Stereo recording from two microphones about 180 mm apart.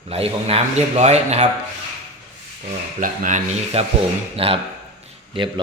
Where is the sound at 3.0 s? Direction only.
45° right (ahead or behind).